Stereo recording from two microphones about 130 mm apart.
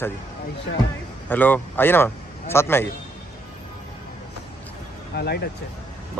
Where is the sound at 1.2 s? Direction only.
15° left (ahead or behind).